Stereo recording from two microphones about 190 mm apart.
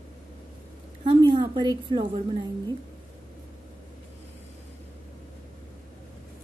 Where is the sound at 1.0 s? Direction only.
25° right (ahead or behind).